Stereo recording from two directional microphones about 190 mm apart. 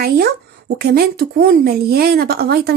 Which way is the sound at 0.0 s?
55° right (ahead or behind).